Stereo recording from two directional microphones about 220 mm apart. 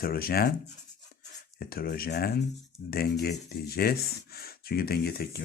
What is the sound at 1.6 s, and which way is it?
Speech, 45° left (ahead or behind).